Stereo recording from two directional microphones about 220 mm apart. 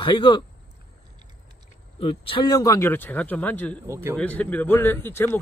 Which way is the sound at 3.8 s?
10° right (ahead or behind).